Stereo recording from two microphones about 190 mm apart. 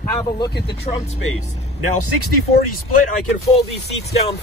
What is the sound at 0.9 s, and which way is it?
Speech, 35° left (ahead or behind).